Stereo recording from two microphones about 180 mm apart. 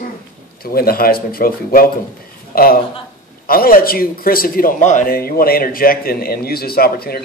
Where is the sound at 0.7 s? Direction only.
55° left (ahead or behind).